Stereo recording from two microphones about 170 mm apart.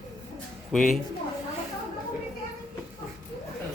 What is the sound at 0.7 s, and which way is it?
Speech, 5° left (ahead or behind).